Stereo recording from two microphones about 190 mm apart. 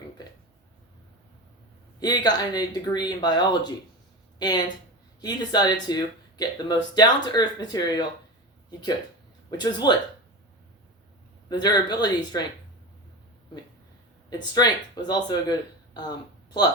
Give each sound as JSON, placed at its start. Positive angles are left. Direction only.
{"t": 2.0, "sound": "speech", "side_deg": 20}
{"t": 9.5, "sound": "speech", "side_deg": 20}
{"t": 11.4, "sound": "speech", "side_deg": 20}
{"t": 14.3, "sound": "speech", "side_deg": 20}